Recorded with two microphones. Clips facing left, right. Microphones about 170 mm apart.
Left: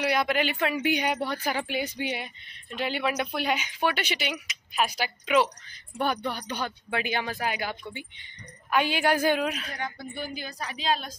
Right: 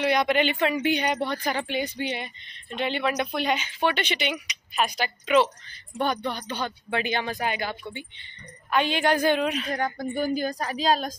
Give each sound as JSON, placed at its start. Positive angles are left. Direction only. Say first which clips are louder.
{"t": 0.0, "sound": "a woman's voice", "louder": "right 3 dB", "side_deg": 5}
{"t": 9.7, "sound": "a woman's voice", "louder": "right 8 dB", "side_deg": -45}